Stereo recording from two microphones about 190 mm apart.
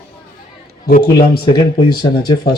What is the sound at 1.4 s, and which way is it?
Speech, 25° left (ahead or behind).